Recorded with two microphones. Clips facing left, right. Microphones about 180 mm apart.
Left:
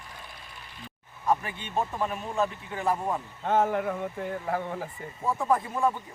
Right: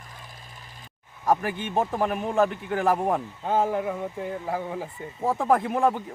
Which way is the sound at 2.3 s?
65° right (ahead or behind).